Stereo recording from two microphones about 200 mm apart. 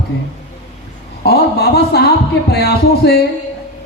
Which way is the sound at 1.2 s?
50° left (ahead or behind).